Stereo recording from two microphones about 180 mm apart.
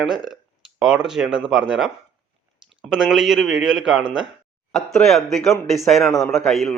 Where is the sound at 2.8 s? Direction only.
Centre (ahead or behind).